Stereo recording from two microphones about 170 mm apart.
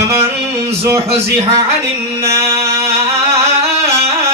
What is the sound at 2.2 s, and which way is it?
Music, 15° right (ahead or behind).